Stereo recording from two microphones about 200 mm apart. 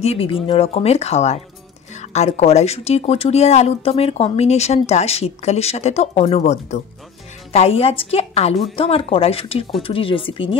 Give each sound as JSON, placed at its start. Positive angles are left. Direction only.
{"t": 0.0, "sound": "a woman's voice", "side_deg": 30}